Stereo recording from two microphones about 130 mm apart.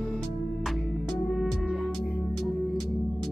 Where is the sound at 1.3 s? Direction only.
Centre (ahead or behind).